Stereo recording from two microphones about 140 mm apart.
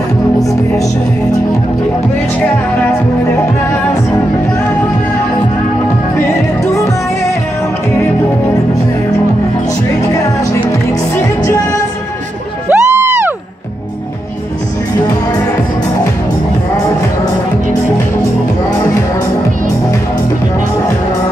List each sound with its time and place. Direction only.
0.4 s music: 25° left (ahead or behind)
6.6 s music: 20° left (ahead or behind)
12.6 s music: 20° right (ahead or behind)